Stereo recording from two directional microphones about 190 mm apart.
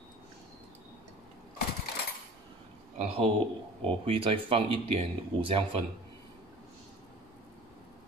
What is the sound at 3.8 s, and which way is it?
Speech, 30° right (ahead or behind).